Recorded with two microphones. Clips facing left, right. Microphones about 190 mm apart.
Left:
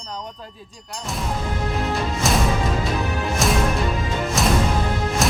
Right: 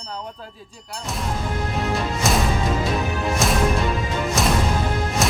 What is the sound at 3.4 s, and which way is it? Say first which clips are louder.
Music: even; centre (ahead or behind).